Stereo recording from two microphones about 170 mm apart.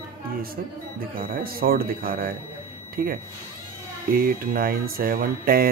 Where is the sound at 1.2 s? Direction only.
60° right (ahead or behind).